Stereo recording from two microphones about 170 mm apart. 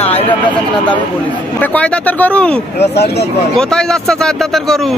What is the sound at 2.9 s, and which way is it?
Speech, 75° left (ahead or behind).